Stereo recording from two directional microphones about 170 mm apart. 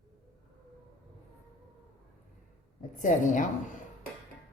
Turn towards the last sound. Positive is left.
turn(degrees=50)  # may be behind; listen again after turning